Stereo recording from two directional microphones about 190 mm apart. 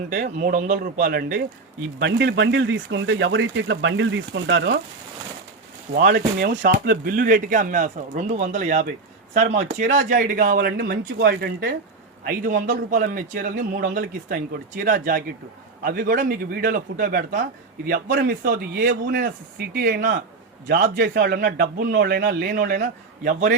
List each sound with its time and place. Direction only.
0.1 s a man's voice: 45° right (ahead or behind)
2.0 s speech: 65° right (ahead or behind)
5.9 s a man's voice: 55° right (ahead or behind)